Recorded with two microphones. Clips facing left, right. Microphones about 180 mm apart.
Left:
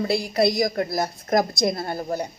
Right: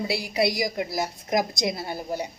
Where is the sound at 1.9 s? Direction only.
45° left (ahead or behind).